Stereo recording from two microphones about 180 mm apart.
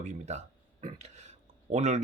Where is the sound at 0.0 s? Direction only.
40° right (ahead or behind).